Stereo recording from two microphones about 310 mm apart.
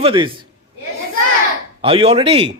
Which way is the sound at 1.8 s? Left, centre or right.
Centre.